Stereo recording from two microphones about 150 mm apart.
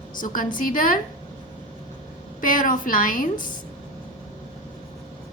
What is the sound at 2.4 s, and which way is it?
Speech, 65° left (ahead or behind).